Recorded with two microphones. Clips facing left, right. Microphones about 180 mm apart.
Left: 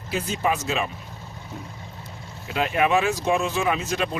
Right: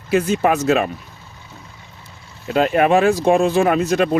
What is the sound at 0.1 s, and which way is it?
Speech, 65° right (ahead or behind).